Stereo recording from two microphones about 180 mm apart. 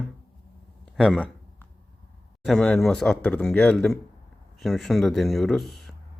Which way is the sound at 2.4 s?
5° left (ahead or behind).